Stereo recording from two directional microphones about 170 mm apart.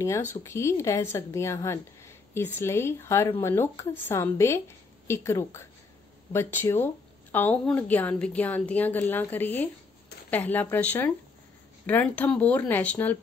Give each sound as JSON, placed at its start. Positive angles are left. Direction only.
{"t": 0.4, "sound": "a woman's voice", "side_deg": 15}